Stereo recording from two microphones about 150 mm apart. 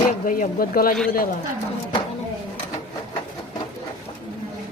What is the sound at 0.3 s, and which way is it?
Speech, 70° left (ahead or behind).